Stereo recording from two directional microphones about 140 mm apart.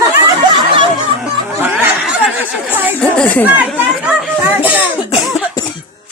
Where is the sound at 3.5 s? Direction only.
5° right (ahead or behind).